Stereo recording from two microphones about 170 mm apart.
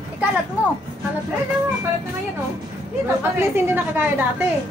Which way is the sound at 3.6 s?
10° right (ahead or behind).